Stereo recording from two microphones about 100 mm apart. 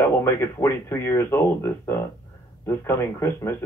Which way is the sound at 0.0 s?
25° left (ahead or behind).